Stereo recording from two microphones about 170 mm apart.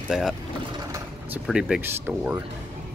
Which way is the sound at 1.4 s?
5° right (ahead or behind).